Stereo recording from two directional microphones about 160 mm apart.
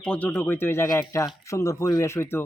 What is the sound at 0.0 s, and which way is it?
Speech, 10° left (ahead or behind).